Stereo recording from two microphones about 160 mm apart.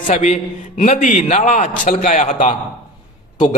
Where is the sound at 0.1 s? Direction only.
45° left (ahead or behind).